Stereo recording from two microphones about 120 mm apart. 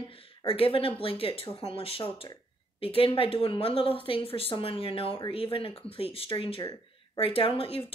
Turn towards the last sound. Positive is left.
turn(degrees=50)  # may be behind; listen again after turning